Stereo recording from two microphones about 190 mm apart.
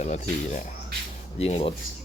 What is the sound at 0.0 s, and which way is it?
Speech, 35° left (ahead or behind).